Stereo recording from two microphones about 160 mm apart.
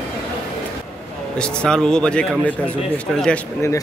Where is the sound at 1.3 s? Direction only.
5° left (ahead or behind).